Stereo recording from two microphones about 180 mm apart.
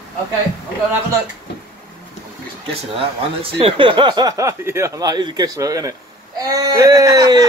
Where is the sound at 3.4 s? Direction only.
30° right (ahead or behind).